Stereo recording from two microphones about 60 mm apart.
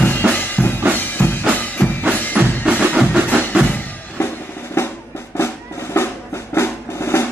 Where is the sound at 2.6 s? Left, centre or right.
Right.